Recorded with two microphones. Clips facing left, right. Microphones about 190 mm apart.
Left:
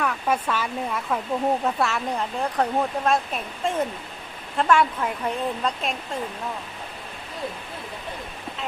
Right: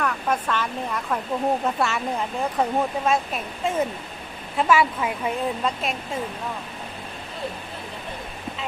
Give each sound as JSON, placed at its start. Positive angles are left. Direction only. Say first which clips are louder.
{"t": 0.0, "sound": "speech", "louder": "even", "side_deg": 10}